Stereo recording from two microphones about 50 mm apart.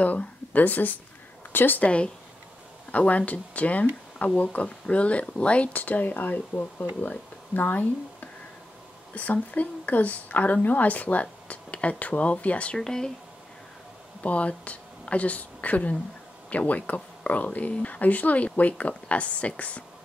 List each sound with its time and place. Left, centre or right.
0.0 s speech: left
1.8 s a woman's voice: left
12.7 s speech: centre
14.2 s speech: left